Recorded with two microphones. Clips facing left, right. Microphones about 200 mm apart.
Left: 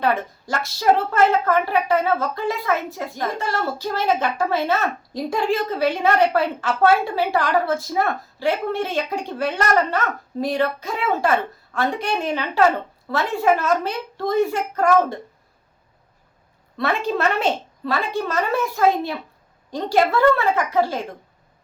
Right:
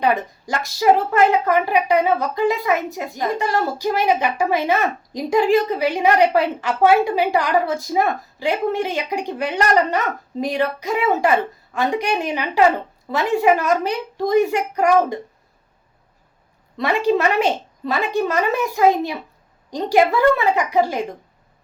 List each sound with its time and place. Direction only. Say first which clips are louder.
0.0 s a woman's voice: right 2 dB; 15° right (ahead or behind)
17.1 s a woman's voice: right 5 dB; 10° right (ahead or behind)